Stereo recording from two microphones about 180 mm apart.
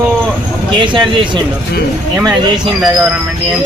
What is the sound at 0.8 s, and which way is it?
Speech, 25° right (ahead or behind).